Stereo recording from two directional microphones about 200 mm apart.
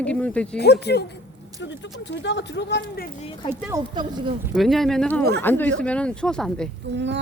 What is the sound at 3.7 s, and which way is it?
Speech, 20° right (ahead or behind).